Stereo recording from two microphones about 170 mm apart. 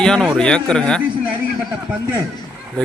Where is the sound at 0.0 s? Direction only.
5° left (ahead or behind).